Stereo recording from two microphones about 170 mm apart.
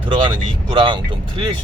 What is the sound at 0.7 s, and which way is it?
Speech, 30° right (ahead or behind).